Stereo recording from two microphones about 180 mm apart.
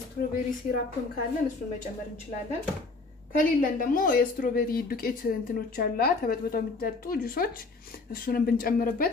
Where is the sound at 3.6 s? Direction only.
50° left (ahead or behind).